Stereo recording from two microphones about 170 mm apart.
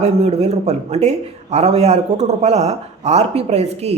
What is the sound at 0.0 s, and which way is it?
Speech, 40° right (ahead or behind).